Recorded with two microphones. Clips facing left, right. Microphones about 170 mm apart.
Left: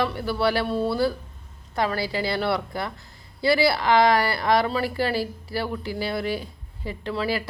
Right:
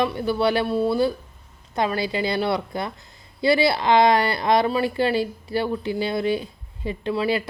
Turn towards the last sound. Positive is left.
turn(degrees=-20)  # may be behind; listen again after turning